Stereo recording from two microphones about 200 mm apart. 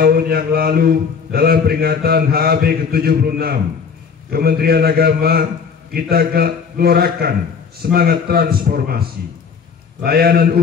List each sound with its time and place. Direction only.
0.0 s a man's voice: 50° right (ahead or behind)